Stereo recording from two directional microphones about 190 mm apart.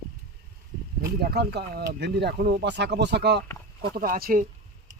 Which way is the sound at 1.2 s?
60° right (ahead or behind).